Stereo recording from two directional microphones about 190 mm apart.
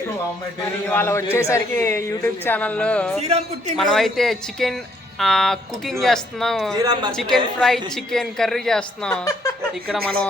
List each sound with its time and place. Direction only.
0.9 s a man's voice: 10° left (ahead or behind)
3.2 s a man's voice: 35° right (ahead or behind)
3.8 s speech: centre (ahead or behind)